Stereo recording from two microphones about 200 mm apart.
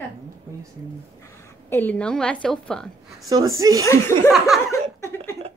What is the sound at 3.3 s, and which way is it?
Speech, 15° right (ahead or behind).